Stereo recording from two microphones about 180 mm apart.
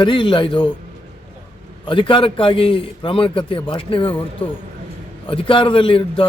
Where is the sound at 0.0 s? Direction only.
25° left (ahead or behind).